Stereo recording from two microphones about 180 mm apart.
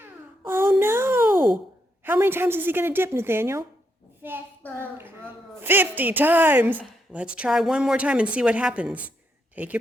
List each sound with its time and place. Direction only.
0.0 s a sound: 10° right (ahead or behind)
2.0 s a woman's voice: 10° right (ahead or behind)
4.6 s speech: 10° left (ahead or behind)
4.9 s a woman's voice: 10° right (ahead or behind)